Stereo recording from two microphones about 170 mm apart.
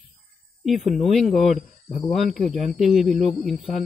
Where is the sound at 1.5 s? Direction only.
55° left (ahead or behind).